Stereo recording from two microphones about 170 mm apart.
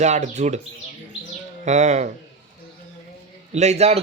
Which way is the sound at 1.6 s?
45° right (ahead or behind).